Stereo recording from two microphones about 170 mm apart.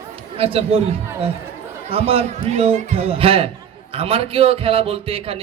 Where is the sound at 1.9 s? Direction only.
35° right (ahead or behind).